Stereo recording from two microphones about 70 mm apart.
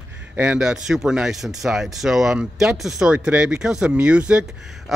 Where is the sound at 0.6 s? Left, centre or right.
Centre.